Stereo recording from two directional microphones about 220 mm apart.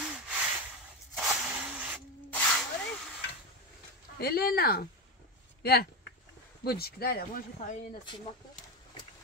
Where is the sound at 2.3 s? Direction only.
5° left (ahead or behind).